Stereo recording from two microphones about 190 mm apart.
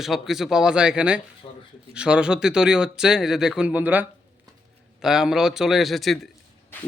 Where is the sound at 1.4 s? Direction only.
30° left (ahead or behind).